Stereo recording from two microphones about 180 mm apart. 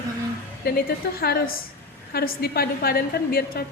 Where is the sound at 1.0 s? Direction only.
65° left (ahead or behind).